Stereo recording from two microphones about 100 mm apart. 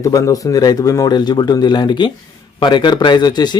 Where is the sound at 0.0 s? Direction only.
35° left (ahead or behind).